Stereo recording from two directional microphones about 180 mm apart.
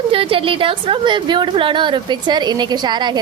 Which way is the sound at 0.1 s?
30° right (ahead or behind).